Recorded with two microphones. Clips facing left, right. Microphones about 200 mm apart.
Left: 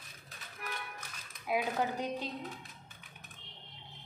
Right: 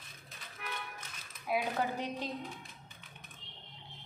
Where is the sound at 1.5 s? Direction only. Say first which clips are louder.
Left 1 dB; 15° left (ahead or behind).